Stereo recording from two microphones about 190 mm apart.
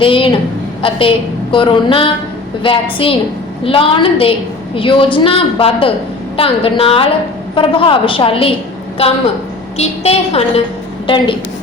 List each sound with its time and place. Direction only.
0.0 s a woman's voice: 25° left (ahead or behind)
9.7 s a woman's voice: 30° left (ahead or behind)